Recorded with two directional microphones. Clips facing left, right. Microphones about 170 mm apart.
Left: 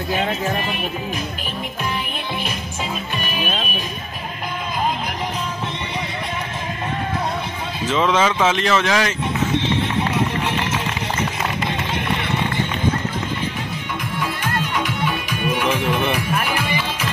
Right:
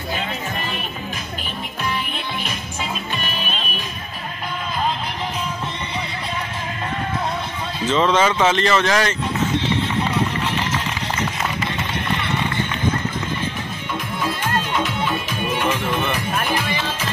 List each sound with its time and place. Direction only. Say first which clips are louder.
7.8 s speech: right 1 dB; centre (ahead or behind)
10.4 s music: left 1 dB; 20° left (ahead or behind)
15.2 s music: left 1 dB; 10° left (ahead or behind)